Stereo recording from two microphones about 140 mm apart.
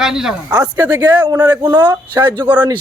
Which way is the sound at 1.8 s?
35° right (ahead or behind).